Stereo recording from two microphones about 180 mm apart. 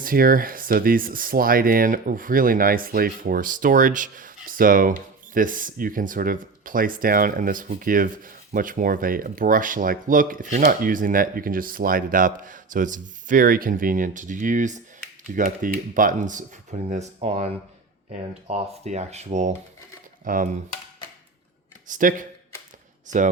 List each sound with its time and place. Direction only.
0.0 s speech: 50° right (ahead or behind)
21.8 s speech: 45° right (ahead or behind)